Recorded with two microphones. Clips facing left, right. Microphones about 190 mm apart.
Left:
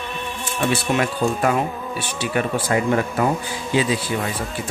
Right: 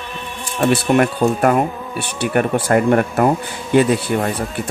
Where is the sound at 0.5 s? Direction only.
55° right (ahead or behind).